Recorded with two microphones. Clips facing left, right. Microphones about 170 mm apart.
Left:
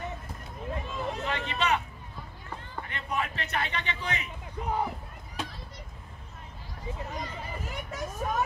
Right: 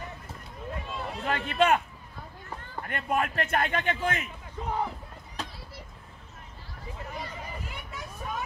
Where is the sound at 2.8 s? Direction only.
50° right (ahead or behind).